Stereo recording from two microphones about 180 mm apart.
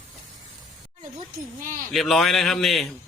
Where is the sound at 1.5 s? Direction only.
50° right (ahead or behind).